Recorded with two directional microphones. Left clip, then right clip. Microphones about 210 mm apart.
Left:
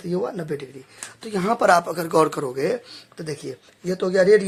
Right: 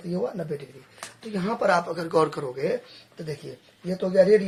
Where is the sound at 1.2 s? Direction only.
45° left (ahead or behind).